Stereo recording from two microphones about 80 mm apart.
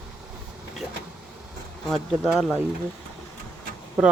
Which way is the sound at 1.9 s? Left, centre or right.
Centre.